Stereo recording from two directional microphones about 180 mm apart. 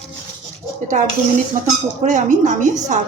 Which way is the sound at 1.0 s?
45° right (ahead or behind).